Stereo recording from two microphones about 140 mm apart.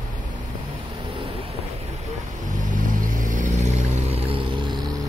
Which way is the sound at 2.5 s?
65° right (ahead or behind).